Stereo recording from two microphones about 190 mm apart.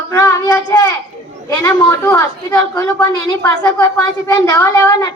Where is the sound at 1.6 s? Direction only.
20° left (ahead or behind).